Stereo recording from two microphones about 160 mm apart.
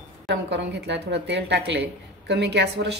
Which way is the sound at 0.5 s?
90° right.